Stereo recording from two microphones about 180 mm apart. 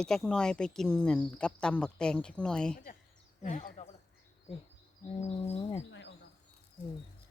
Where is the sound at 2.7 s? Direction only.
50° left (ahead or behind).